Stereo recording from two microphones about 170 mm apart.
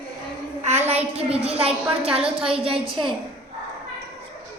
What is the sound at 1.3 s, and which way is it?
A woman's voice, 35° right (ahead or behind).